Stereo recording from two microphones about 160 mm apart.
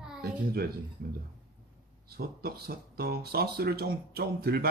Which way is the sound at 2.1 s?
70° right (ahead or behind).